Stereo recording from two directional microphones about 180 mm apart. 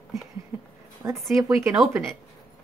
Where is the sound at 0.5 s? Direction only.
15° right (ahead or behind).